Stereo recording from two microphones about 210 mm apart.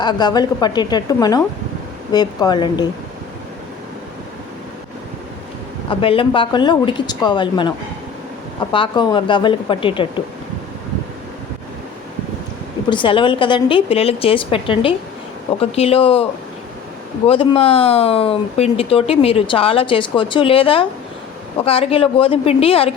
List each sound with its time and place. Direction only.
0.0 s speech: 20° left (ahead or behind)
5.9 s speech: 25° left (ahead or behind)
8.7 s speech: 25° left (ahead or behind)
12.9 s speech: 25° left (ahead or behind)
17.2 s speech: 25° left (ahead or behind)